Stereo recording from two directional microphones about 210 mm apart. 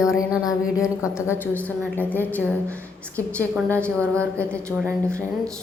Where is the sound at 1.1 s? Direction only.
10° left (ahead or behind).